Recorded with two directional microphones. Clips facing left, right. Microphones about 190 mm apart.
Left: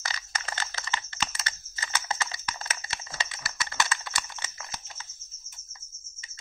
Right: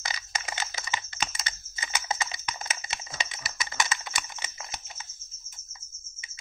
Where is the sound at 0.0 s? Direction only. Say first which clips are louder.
Right 1 dB; 15° right (ahead or behind).